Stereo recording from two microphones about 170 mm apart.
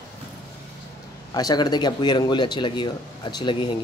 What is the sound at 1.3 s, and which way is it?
Speech, 25° left (ahead or behind).